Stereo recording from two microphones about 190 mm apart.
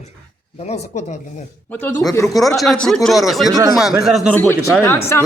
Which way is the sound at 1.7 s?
10° left (ahead or behind).